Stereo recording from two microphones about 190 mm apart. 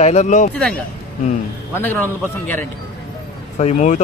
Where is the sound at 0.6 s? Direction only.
5° left (ahead or behind).